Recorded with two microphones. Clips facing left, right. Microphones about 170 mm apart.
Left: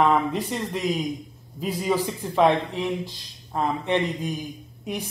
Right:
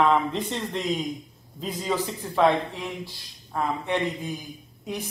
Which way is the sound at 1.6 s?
10° left (ahead or behind).